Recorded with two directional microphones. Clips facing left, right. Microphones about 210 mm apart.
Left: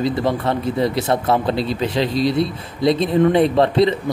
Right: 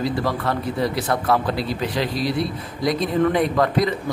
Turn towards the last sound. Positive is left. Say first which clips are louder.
# left 5 dB
turn(degrees=25)  # may be behind; listen again after turning